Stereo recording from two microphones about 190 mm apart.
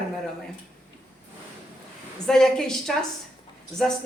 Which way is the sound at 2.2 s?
Centre (ahead or behind).